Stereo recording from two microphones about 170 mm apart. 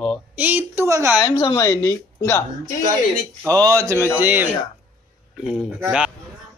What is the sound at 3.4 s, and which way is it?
A woman's voice, 20° right (ahead or behind).